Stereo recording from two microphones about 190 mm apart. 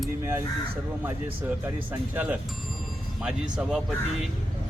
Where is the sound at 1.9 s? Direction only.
10° right (ahead or behind).